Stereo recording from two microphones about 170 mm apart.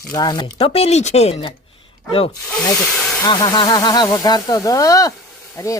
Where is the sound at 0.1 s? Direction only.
25° left (ahead or behind).